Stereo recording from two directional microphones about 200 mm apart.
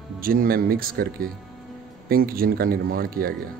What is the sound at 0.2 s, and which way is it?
A man's voice, 45° right (ahead or behind).